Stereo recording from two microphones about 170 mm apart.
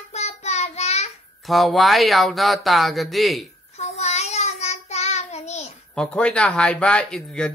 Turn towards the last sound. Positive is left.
turn(degrees=5)  # may be behind; listen again after turning